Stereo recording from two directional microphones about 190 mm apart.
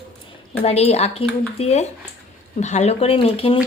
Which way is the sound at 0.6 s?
35° left (ahead or behind).